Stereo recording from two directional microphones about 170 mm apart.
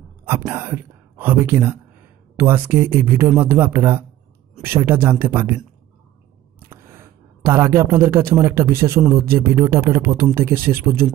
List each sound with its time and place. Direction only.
0.5 s speech: 15° right (ahead or behind)
6.7 s a man's voice: 15° right (ahead or behind)